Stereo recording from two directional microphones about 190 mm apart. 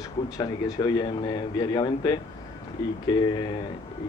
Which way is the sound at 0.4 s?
20° left (ahead or behind).